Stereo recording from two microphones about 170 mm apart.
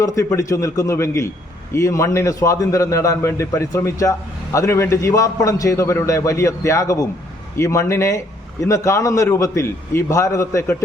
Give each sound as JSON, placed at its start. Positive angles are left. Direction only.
{"t": 0.0, "sound": "a man's voice", "side_deg": 20}